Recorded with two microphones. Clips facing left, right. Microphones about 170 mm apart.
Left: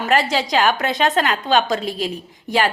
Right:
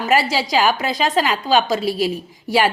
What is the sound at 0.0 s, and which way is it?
A woman's voice, 5° right (ahead or behind).